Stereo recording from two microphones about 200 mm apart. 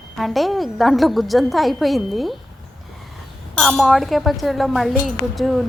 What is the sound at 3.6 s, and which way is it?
A woman's voice, centre (ahead or behind).